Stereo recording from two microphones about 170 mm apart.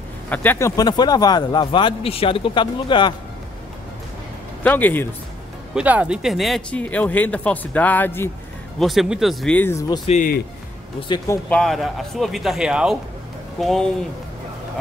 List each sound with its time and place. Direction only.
0.3 s speech: 10° left (ahead or behind); by 3.2 s 25° left (ahead or behind)
4.6 s speech: 10° left (ahead or behind)
5.8 s speech: 5° right (ahead or behind); by 8.3 s 10° left (ahead or behind)
8.7 s speech: centre (ahead or behind); by 9.9 s 15° left (ahead or behind)
10.0 s speech: 45° left (ahead or behind)
11.2 s speech: 10° left (ahead or behind)